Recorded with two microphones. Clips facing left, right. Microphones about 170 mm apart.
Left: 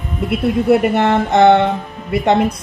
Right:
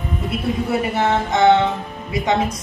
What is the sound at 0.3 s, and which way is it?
Speech, 60° left (ahead or behind).